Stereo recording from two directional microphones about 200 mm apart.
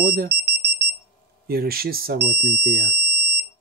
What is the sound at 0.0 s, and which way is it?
Alarm, 45° right (ahead or behind).